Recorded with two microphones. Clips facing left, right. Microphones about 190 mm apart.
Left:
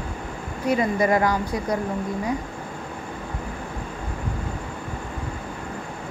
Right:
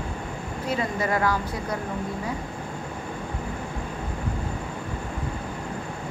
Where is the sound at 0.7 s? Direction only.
15° left (ahead or behind).